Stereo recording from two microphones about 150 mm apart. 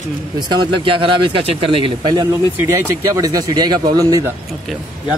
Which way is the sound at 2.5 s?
20° right (ahead or behind).